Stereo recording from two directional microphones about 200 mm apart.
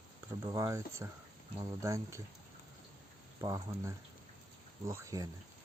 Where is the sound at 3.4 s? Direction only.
15° right (ahead or behind).